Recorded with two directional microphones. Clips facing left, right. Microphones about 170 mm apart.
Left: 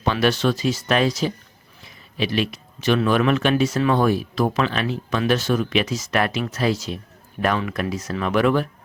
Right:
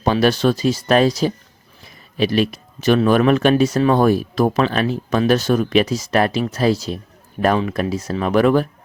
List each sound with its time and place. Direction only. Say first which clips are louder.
0.0 s speech: right 4 dB; 40° right (ahead or behind)